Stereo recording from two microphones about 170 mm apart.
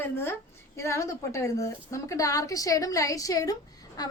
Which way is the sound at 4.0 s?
20° left (ahead or behind).